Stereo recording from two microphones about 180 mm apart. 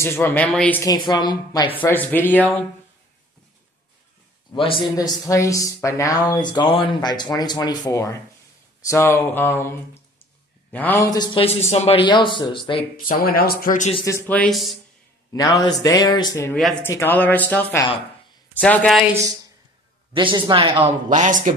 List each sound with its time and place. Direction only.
0.0 s speech: 15° left (ahead or behind)
0.8 s speech: 25° left (ahead or behind)
1.8 s speech: 10° left (ahead or behind)
4.5 s speech: 30° left (ahead or behind)
11.4 s speech: 35° left (ahead or behind)
12.9 s speech: 50° left (ahead or behind)
14.0 s speech: 15° left (ahead or behind)
15.3 s speech: 20° left (ahead or behind)
20.1 s speech: 30° right (ahead or behind)
21.1 s speech: 45° right (ahead or behind)